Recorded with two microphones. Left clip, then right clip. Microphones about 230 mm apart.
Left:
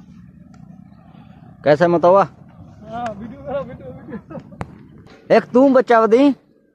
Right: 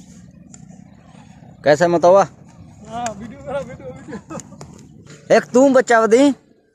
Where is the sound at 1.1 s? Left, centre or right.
Centre.